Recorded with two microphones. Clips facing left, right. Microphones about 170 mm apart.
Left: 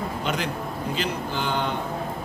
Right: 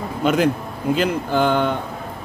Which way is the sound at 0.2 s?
50° right (ahead or behind).